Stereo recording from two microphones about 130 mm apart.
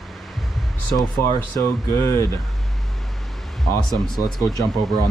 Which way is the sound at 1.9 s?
30° left (ahead or behind).